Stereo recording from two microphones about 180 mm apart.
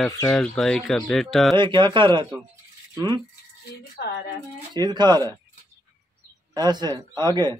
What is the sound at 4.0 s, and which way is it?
Speech, 65° left (ahead or behind).